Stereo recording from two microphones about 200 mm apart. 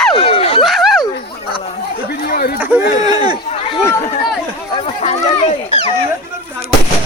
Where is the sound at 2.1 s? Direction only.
50° left (ahead or behind).